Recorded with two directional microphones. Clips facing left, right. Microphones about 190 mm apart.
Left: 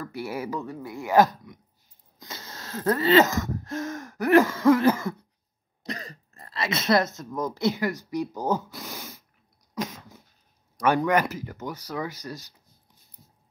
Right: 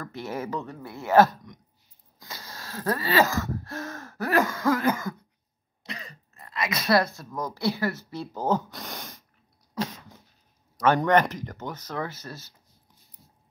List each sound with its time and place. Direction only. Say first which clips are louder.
0.0 s speech: left 1 dB; 10° left (ahead or behind)
2.1 s speech: left 1 dB; 25° left (ahead or behind)
5.9 s speech: left 5 dB; 40° left (ahead or behind); by 9.2 s 5° left (ahead or behind)
9.8 s cough: right 1 dB; 10° left (ahead or behind)
11.0 s speech: right 2 dB; 10° left (ahead or behind)